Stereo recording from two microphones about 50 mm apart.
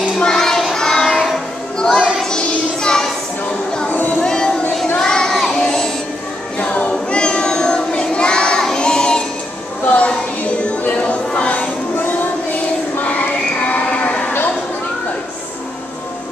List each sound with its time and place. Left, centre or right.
0.2 s child singing: centre
1.8 s child singing: centre
3.9 s a sound: left
4.2 s music: centre
4.9 s child singing: centre
5.5 s music: centre
6.6 s child singing: left
8.7 s music: centre
9.8 s music: left